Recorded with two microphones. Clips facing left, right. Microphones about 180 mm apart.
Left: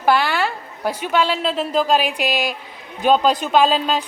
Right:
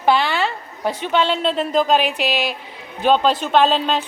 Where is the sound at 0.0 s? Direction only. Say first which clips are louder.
Even; 5° left (ahead or behind).